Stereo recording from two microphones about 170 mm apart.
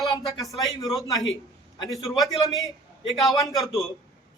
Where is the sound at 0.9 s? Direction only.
20° left (ahead or behind).